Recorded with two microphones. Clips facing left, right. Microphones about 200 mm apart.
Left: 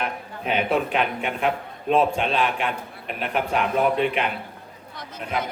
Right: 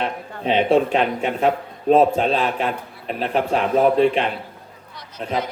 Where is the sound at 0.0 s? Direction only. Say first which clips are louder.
Right 4 dB; 30° right (ahead or behind).